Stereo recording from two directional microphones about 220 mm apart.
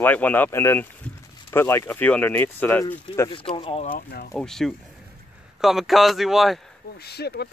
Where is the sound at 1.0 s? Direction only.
5° left (ahead or behind).